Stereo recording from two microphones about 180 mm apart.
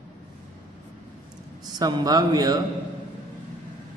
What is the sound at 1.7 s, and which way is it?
Speech, 20° right (ahead or behind).